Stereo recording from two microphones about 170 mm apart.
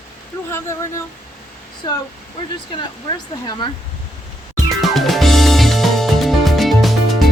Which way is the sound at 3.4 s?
25° left (ahead or behind).